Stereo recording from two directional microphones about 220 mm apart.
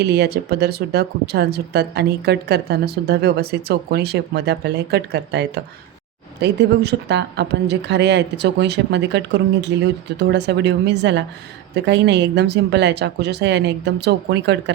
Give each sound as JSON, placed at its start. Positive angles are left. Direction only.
{"t": 0.0, "sound": "speech", "side_deg": -50}